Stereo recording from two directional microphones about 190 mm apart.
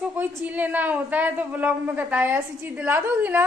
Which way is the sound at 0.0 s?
5° right (ahead or behind).